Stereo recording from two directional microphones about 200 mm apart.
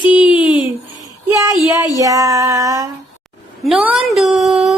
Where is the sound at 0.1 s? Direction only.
5° right (ahead or behind).